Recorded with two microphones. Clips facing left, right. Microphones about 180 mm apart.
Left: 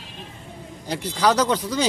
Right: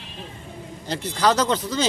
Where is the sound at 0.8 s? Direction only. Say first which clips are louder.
Even; 10° left (ahead or behind).